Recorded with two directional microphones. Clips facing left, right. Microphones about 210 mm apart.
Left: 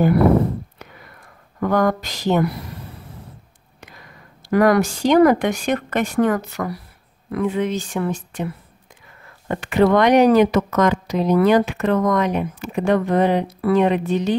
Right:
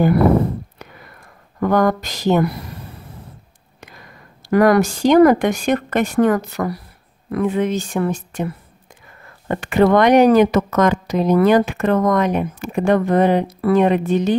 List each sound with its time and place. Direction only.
1.7 s speech: 45° right (ahead or behind)
4.5 s speech: 45° right (ahead or behind)
9.5 s speech: 50° right (ahead or behind)